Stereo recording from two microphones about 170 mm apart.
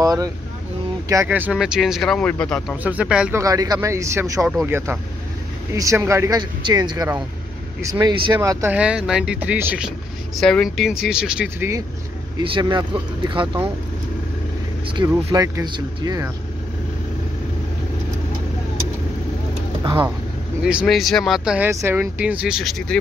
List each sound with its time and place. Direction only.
0.0 s speech: 20° right (ahead or behind); by 2.6 s 5° left (ahead or behind)
2.8 s speech: 10° right (ahead or behind)
3.3 s speech: 20° right (ahead or behind)
8.7 s speech: 5° right (ahead or behind)
12.4 s speech: 30° right (ahead or behind)
15.0 s speech: 25° right (ahead or behind)
20.6 s speech: centre (ahead or behind)
21.6 s speech: 15° right (ahead or behind); by 22.9 s centre (ahead or behind)